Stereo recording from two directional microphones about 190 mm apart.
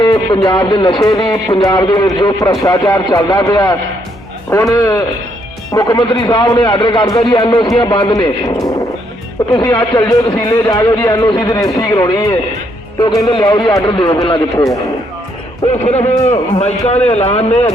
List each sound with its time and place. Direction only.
0.0 s speech: 25° left (ahead or behind)
15.6 s a man's voice: 35° left (ahead or behind)